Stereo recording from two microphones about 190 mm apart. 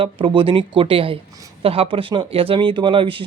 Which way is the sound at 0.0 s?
25° right (ahead or behind).